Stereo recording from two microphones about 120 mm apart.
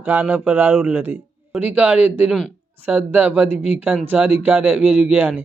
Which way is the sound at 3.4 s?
60° left (ahead or behind).